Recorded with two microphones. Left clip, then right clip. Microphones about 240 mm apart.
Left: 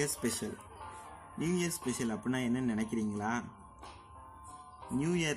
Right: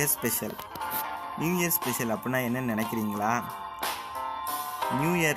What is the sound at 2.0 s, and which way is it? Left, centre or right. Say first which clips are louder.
Speech: right 6 dB; centre.